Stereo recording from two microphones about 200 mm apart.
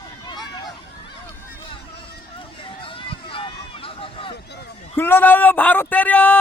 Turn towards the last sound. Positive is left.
turn(degrees=5)  # may be behind; listen again after turning